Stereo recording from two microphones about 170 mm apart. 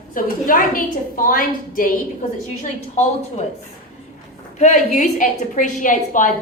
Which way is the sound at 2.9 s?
40° left (ahead or behind).